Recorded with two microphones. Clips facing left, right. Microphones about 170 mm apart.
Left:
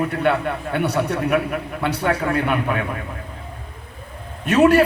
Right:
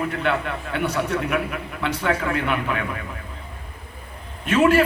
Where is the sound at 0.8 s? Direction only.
65° left (ahead or behind).